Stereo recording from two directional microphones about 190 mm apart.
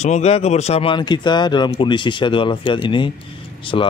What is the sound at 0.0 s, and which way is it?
Speech, 35° left (ahead or behind).